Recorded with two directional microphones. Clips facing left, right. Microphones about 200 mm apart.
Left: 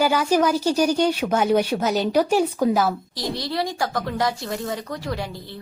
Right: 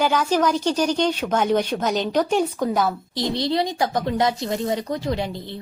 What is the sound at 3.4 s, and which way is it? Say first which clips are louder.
A woman's voice: right 4 dB; 20° right (ahead or behind).